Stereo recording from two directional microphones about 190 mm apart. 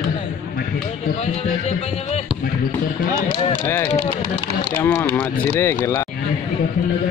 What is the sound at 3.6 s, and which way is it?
Speech, 15° left (ahead or behind).